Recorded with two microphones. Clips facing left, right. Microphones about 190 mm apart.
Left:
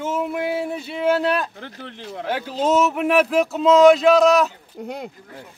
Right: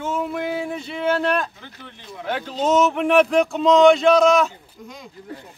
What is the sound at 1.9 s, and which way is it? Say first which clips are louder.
Speech: left 4 dB; 80° left.